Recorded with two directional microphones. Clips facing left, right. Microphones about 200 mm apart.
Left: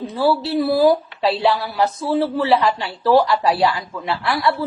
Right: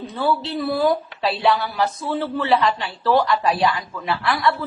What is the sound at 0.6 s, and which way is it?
Speech, 30° left (ahead or behind).